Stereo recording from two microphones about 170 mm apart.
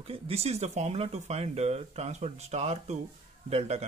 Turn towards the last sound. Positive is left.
turn(degrees=-40)  # may be behind; listen again after turning